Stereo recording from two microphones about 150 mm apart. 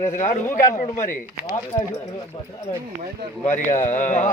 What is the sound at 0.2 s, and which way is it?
A man's voice, 50° left (ahead or behind).